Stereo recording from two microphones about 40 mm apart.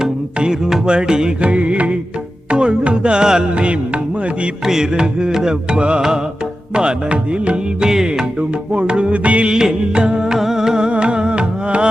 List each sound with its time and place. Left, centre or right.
0.3 s music: right
1.4 s music: right
4.6 s music: centre
7.8 s music: centre; by 9.5 s right
9.5 s music: centre